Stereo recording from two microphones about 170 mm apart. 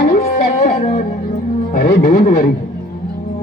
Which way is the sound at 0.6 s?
60° left (ahead or behind).